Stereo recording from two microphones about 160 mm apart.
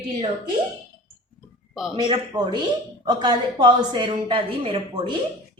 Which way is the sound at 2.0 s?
25° right (ahead or behind).